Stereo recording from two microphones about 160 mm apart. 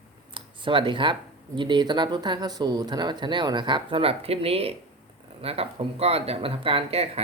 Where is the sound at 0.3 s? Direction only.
30° right (ahead or behind).